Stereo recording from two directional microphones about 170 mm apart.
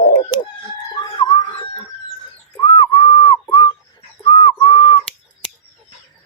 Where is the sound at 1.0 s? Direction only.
25° left (ahead or behind).